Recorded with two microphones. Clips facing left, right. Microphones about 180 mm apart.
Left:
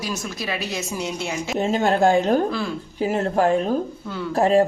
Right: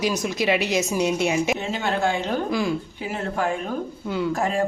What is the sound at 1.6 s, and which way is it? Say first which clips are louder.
A woman's voice: left 6 dB; 40° left (ahead or behind).